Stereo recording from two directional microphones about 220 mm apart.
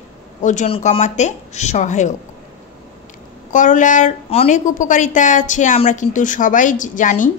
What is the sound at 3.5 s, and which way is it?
A woman's voice, 35° left (ahead or behind).